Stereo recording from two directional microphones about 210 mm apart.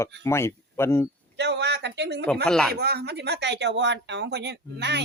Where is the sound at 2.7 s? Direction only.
50° right (ahead or behind).